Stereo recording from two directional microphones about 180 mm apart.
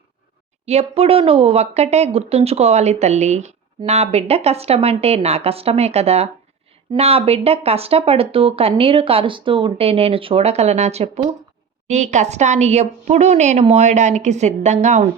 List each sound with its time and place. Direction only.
0.6 s speech: 35° right (ahead or behind)